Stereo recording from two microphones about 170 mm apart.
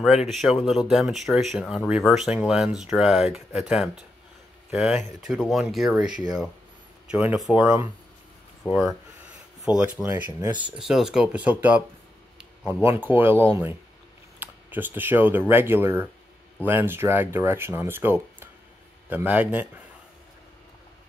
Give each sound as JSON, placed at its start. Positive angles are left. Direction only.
{"t": 0.0, "sound": "speech", "side_deg": 0}
{"t": 9.7, "sound": "speech", "side_deg": -5}